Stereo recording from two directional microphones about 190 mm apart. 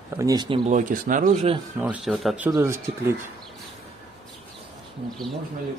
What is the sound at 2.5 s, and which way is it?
Speech, 15° right (ahead or behind).